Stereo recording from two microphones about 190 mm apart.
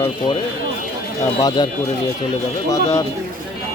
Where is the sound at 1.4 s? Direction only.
20° left (ahead or behind).